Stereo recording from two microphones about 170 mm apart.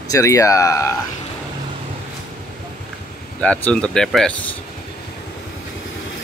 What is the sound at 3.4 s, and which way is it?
Speech, 5° left (ahead or behind).